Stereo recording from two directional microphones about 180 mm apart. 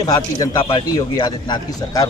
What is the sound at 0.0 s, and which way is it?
Speech, 20° left (ahead or behind).